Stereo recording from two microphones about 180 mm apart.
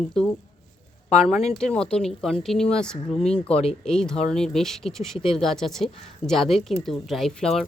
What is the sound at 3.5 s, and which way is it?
Speech, 35° left (ahead or behind).